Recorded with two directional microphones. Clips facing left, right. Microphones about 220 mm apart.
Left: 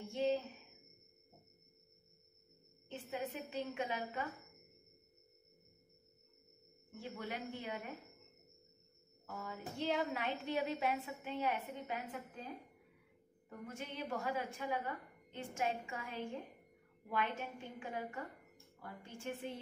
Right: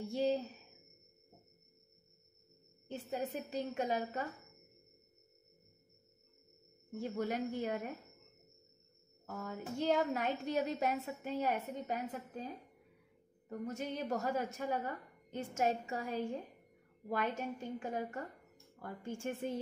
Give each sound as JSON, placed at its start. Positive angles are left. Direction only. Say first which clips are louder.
{"t": 0.0, "sound": "a sound", "louder": "right 2 dB", "side_deg": -35}
{"t": 2.9, "sound": "a woman's voice", "louder": "right 4 dB", "side_deg": -40}
{"t": 7.0, "sound": "a woman's voice", "louder": "right 8 dB", "side_deg": -40}
{"t": 9.2, "sound": "a sound", "louder": "right 3 dB", "side_deg": -45}
{"t": 9.8, "sound": "a woman's voice", "louder": "right 5 dB", "side_deg": -45}
{"t": 13.5, "sound": "a woman's voice", "louder": "right 7 dB", "side_deg": -40}